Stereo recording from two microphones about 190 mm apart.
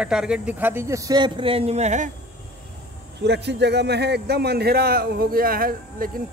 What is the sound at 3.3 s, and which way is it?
A man's voice, 60° right (ahead or behind).